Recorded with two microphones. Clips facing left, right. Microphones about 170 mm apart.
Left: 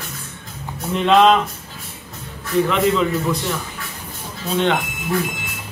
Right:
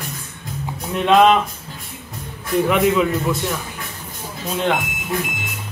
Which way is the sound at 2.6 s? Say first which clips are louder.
Right 1 dB; 10° right (ahead or behind).